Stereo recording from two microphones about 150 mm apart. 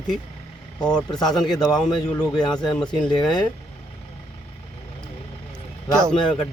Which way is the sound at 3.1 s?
30° left (ahead or behind).